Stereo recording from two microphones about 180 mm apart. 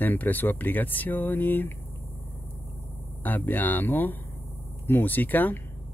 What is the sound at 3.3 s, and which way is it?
Speech, 10° left (ahead or behind).